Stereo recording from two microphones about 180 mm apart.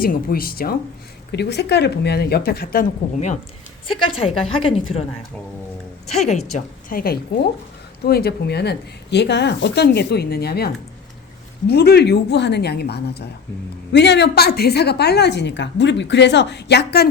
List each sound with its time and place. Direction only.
0.0 s a woman's voice: 55° left (ahead or behind)
1.3 s a woman's voice: 70° left (ahead or behind)
4.1 s a woman's voice: 30° left (ahead or behind)
6.1 s a woman's voice: 40° left (ahead or behind)
6.5 s a woman's voice: 50° left (ahead or behind)
11.7 s a woman's voice: 65° left (ahead or behind)